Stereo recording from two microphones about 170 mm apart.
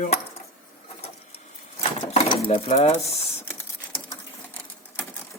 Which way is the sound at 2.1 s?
30° left (ahead or behind).